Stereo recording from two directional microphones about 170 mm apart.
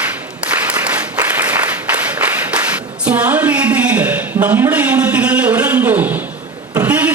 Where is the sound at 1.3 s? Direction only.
10° right (ahead or behind).